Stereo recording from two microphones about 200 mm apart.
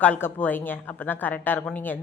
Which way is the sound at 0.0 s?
10° left (ahead or behind).